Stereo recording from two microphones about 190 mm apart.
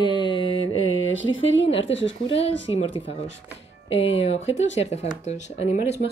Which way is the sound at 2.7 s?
25° left (ahead or behind).